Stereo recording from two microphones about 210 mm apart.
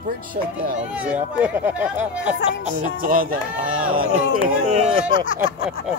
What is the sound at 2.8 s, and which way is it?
Speech, 40° right (ahead or behind).